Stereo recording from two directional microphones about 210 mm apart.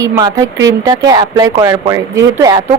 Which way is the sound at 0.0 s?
15° right (ahead or behind).